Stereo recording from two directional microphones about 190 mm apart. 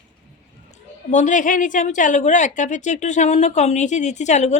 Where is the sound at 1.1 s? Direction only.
40° left (ahead or behind).